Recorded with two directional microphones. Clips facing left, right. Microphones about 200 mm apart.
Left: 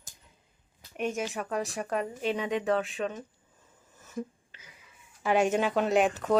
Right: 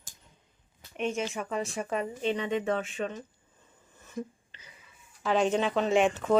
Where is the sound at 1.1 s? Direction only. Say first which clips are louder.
Even; 5° left (ahead or behind).